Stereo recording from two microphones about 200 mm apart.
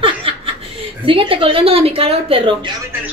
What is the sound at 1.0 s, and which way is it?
Speech, 25° right (ahead or behind).